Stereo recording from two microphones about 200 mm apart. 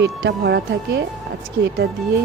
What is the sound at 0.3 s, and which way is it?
Speech, 60° right (ahead or behind).